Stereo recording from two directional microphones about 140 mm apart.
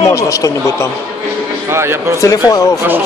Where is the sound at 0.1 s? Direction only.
20° left (ahead or behind).